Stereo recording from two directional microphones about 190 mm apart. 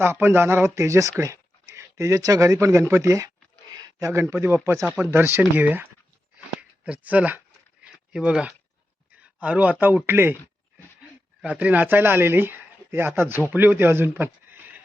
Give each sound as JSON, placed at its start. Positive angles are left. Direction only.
{"t": 0.0, "sound": "a man's voice", "side_deg": -10}
{"t": 6.3, "sound": "a sound", "side_deg": -5}
{"t": 9.2, "sound": "a man's voice", "side_deg": -5}
{"t": 11.4, "sound": "a man's voice", "side_deg": -5}